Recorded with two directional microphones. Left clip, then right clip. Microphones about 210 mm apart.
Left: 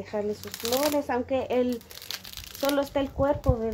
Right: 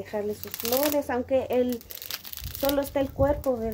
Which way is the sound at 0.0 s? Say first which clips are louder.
Even; 5° right (ahead or behind).